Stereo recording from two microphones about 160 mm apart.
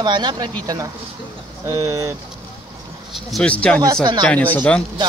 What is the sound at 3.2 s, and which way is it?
Speech, 5° left (ahead or behind).